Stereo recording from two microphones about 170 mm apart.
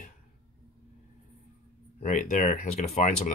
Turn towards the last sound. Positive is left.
turn(degrees=45)  # may be behind; listen again after turning